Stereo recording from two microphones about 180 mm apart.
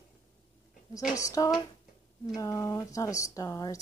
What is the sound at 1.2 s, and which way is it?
A woman's voice, 20° left (ahead or behind).